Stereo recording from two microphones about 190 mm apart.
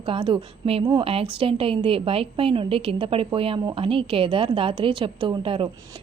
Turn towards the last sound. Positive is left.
turn(degrees=-25)  # may be behind; listen again after turning